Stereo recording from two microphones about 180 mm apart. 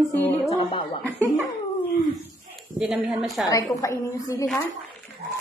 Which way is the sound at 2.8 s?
5° right (ahead or behind).